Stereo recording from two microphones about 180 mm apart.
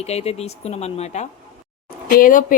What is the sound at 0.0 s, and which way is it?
Speech, 35° left (ahead or behind).